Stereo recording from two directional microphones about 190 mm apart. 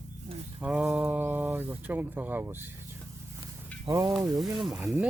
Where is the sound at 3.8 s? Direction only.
15° right (ahead or behind).